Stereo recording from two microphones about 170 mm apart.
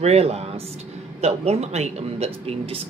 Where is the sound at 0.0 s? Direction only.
40° right (ahead or behind).